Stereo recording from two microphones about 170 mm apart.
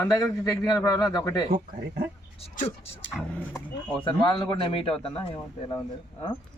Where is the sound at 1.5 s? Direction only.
55° right (ahead or behind).